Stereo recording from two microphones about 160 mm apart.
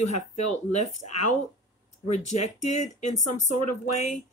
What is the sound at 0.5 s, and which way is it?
Speech, 50° left (ahead or behind).